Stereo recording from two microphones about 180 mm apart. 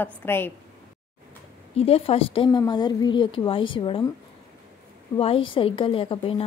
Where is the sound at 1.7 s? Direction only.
35° left (ahead or behind).